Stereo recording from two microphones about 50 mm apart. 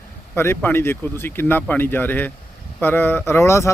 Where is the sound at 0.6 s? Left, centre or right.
Left.